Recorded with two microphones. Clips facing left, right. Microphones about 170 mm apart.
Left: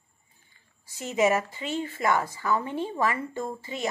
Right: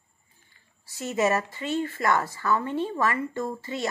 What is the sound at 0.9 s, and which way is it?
Speech, 15° left (ahead or behind).